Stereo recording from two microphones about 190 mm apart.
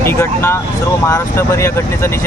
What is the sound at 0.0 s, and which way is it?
Speech, 10° left (ahead or behind).